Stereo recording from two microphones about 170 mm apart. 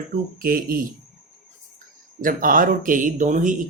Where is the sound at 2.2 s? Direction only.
55° right (ahead or behind).